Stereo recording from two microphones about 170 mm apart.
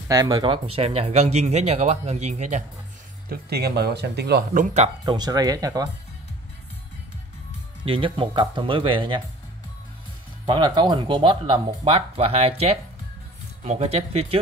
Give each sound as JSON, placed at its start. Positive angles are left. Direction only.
{"t": 0.1, "sound": "speech", "side_deg": -25}
{"t": 3.3, "sound": "speech", "side_deg": -70}
{"t": 5.0, "sound": "speech", "side_deg": -25}
{"t": 7.8, "sound": "speech", "side_deg": -30}
{"t": 10.4, "sound": "speech", "side_deg": -25}